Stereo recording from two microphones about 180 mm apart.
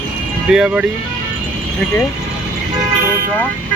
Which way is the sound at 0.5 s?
5° right (ahead or behind).